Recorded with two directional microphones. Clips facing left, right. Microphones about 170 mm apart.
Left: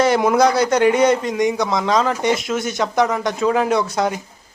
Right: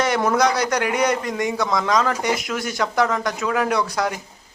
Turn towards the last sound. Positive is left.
turn(degrees=25)  # may be behind; listen again after turning